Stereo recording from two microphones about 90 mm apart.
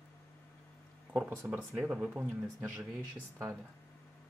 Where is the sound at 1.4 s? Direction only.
20° right (ahead or behind).